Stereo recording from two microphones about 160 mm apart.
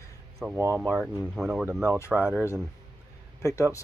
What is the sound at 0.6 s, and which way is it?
Speech, 15° right (ahead or behind).